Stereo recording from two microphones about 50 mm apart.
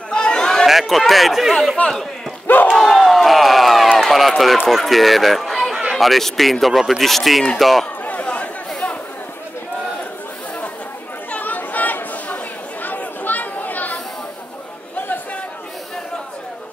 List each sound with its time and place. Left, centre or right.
0.1 s chatter: centre
0.7 s speech: centre
2.4 s battle cry: left
2.7 s crowd: centre
4.0 s speech: centre
8.0 s a sound: left
11.3 s chatter: left